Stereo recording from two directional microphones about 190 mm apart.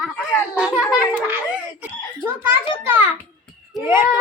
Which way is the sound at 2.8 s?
10° right (ahead or behind).